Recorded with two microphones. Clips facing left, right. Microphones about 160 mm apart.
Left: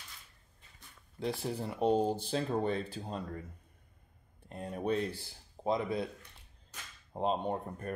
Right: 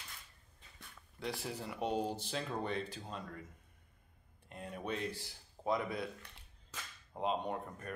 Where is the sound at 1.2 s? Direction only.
30° left (ahead or behind).